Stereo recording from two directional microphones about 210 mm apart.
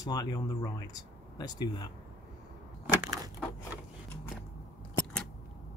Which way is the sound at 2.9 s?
15° right (ahead or behind).